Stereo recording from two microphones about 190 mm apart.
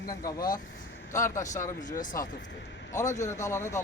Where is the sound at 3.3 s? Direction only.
15° left (ahead or behind).